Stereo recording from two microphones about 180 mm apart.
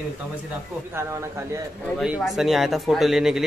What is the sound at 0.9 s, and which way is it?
Speech, 15° right (ahead or behind).